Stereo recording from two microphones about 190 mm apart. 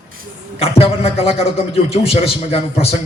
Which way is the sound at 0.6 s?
30° left (ahead or behind).